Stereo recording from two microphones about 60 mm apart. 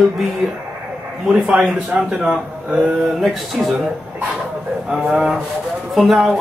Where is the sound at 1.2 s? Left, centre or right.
Centre.